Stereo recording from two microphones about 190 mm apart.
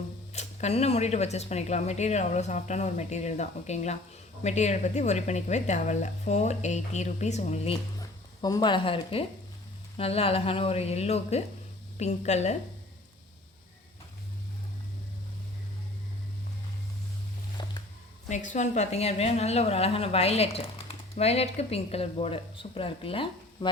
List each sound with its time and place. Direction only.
0.3 s a woman's voice: 35° left (ahead or behind)
7.9 s a woman's voice: 20° left (ahead or behind); by 12.5 s 35° left (ahead or behind)
17.6 s music: 25° left (ahead or behind)
18.3 s a woman's voice: 40° left (ahead or behind)